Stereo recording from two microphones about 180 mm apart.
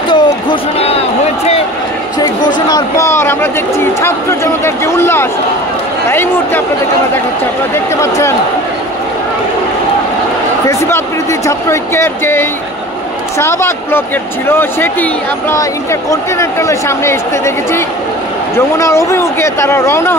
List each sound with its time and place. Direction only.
0.1 s a sound: 30° left (ahead or behind)
2.1 s speech: 20° left (ahead or behind)
7.7 s speech: 15° left (ahead or behind)
10.7 s speech: 15° left (ahead or behind)
18.8 s speech: 15° left (ahead or behind)